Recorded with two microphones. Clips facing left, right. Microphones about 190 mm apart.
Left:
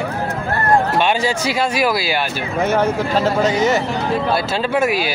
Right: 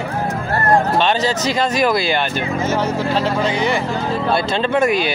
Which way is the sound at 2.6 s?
55° left (ahead or behind).